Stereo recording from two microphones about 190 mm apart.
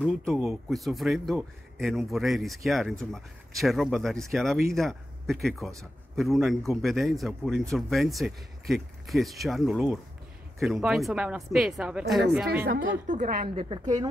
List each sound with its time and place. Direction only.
0.0 s speech: centre (ahead or behind)
12.6 s a woman's voice: 45° right (ahead or behind)
13.6 s a woman's voice: 25° right (ahead or behind)